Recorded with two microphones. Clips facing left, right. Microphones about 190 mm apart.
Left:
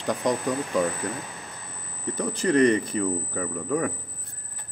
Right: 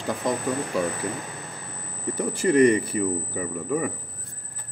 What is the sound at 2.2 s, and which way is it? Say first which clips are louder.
A man's voice: right 2 dB; 10° right (ahead or behind).